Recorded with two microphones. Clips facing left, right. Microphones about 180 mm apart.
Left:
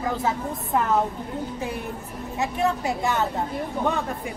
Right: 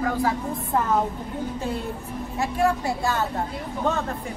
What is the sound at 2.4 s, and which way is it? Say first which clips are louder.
Speech: right 1 dB; 20° left (ahead or behind).